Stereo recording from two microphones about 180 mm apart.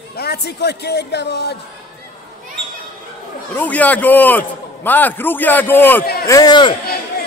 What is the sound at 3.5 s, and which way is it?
A man's voice, 10° left (ahead or behind).